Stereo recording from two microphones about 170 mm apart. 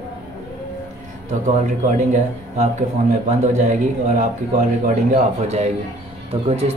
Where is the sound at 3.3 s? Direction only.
50° right (ahead or behind).